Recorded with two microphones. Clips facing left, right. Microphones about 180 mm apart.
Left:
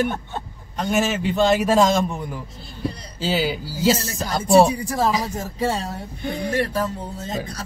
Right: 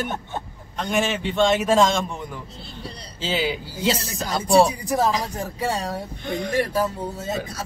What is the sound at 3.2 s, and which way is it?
Speech, 5° left (ahead or behind).